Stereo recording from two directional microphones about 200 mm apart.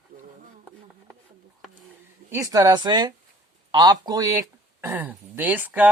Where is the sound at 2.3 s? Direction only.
15° right (ahead or behind).